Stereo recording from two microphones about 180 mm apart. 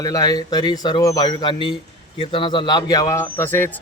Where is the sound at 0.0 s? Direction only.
20° left (ahead or behind).